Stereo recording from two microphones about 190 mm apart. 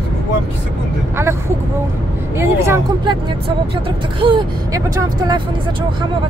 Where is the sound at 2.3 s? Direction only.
15° right (ahead or behind).